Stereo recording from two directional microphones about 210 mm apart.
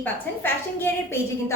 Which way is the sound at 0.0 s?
10° left (ahead or behind).